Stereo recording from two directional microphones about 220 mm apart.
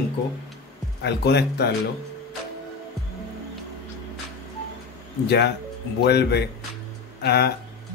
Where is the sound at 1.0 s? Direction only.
50° left (ahead or behind).